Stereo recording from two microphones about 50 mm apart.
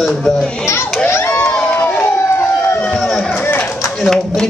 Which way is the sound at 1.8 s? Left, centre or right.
Left.